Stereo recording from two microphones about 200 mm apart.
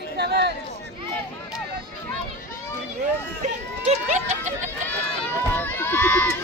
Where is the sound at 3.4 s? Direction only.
35° right (ahead or behind).